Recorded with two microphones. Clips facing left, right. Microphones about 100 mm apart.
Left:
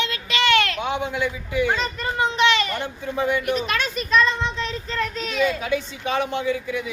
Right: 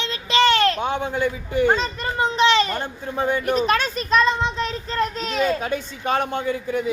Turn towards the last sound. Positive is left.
turn(degrees=-40)  # may be behind; listen again after turning